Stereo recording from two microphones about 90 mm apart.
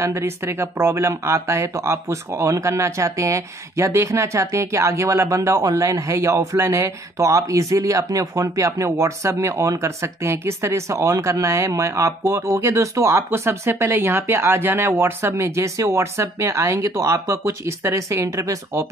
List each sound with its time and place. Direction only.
0.0 s speech: 30° right (ahead or behind)